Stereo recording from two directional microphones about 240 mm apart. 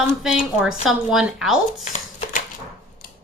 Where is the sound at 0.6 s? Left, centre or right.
Centre.